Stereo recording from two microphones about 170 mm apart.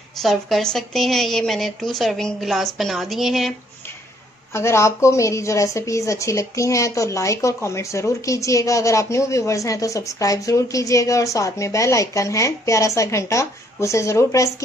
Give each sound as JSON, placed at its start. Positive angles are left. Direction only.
{"t": 0.2, "sound": "a woman's voice", "side_deg": 0}
{"t": 4.6, "sound": "a woman's voice", "side_deg": 15}